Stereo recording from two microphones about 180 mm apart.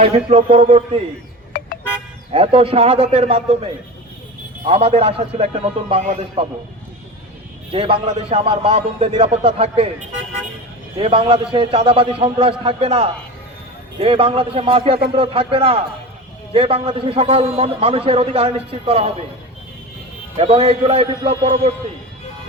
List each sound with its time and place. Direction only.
0.0 s a man's voice: 35° right (ahead or behind)
1.5 s vehicle: 55° left (ahead or behind)
2.3 s a man's voice: 30° right (ahead or behind)
7.7 s a man's voice: 30° right (ahead or behind)
10.9 s a man's voice: 30° right (ahead or behind)
20.3 s a man's voice: 35° right (ahead or behind)